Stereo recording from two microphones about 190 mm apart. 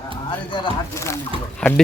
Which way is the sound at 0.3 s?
25° left (ahead or behind).